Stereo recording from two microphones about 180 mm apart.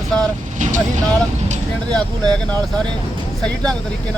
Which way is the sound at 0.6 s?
45° right (ahead or behind).